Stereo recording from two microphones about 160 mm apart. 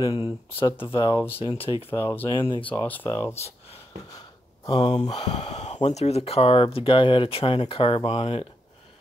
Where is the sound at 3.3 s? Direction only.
40° left (ahead or behind).